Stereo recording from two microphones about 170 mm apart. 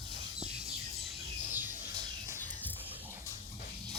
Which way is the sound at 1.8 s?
35° left (ahead or behind).